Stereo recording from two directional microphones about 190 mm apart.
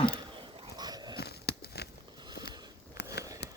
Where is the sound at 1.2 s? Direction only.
60° left (ahead or behind).